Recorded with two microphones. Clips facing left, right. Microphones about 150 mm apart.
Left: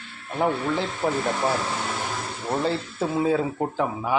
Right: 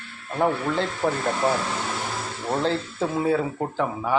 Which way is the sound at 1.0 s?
5° left (ahead or behind).